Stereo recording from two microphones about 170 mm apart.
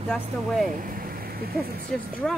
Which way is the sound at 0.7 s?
55° right (ahead or behind).